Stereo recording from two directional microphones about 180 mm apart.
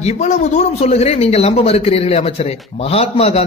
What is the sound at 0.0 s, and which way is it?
A man's voice, 40° left (ahead or behind).